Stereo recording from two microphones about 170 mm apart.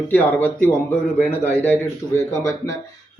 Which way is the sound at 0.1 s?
10° left (ahead or behind).